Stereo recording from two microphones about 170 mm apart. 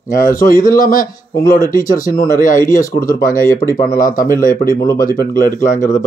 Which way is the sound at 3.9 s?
55° left (ahead or behind).